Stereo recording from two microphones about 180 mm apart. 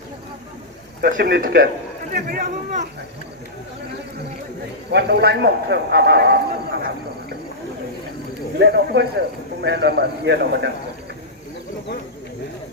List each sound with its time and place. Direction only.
1.0 s a man's voice: 60° right (ahead or behind)
4.9 s a man's voice: 65° right (ahead or behind)
8.5 s a man's voice: 70° right (ahead or behind)